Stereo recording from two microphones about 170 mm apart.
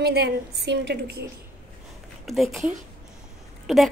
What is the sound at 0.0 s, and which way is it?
Female singing, 70° right (ahead or behind).